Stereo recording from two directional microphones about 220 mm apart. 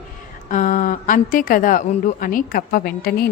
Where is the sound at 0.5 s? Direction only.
35° left (ahead or behind).